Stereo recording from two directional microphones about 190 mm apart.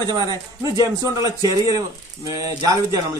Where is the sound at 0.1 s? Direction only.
20° right (ahead or behind).